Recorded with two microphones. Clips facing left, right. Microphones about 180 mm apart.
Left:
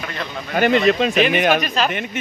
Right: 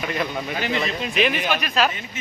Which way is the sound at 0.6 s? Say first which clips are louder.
Left 12 dB; 65° left (ahead or behind).